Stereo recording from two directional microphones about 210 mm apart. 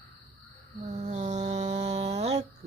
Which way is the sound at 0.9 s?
35° right (ahead or behind).